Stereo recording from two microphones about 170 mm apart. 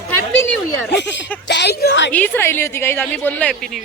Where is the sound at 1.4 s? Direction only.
90° left.